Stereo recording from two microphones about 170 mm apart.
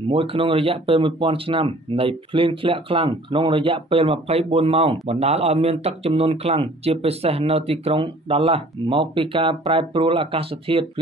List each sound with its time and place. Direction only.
0.1 s speech: 30° right (ahead or behind)